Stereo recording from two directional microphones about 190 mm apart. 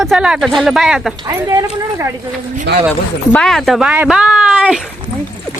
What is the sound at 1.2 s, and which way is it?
Speech, 20° right (ahead or behind).